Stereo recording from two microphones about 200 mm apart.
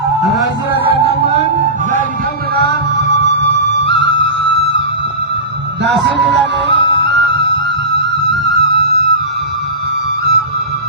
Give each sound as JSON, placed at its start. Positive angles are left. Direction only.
{"t": 3.8, "sound": "music", "side_deg": -60}
{"t": 5.8, "sound": "a sound", "side_deg": -60}
{"t": 6.9, "sound": "music", "side_deg": -60}